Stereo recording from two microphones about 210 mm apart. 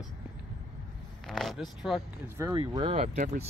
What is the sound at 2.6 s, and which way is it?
Speech, 25° right (ahead or behind).